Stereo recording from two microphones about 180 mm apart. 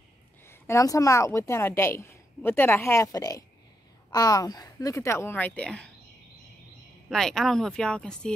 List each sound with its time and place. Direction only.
0.5 s a woman's voice: 15° left (ahead or behind)
7.1 s speech: centre (ahead or behind)